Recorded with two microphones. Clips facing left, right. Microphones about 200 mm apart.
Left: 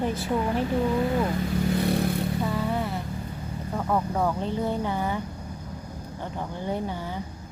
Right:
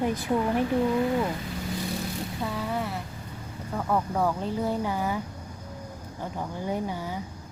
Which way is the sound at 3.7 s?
Centre (ahead or behind).